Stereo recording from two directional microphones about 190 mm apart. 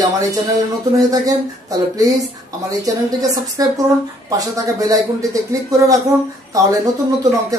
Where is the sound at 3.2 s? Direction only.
20° right (ahead or behind).